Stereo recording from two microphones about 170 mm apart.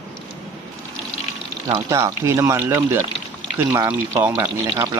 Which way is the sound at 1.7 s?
15° right (ahead or behind).